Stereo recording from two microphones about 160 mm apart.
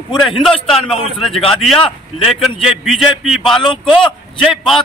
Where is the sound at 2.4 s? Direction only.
Centre (ahead or behind).